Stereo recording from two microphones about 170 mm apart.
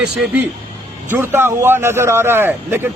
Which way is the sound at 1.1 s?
15° right (ahead or behind).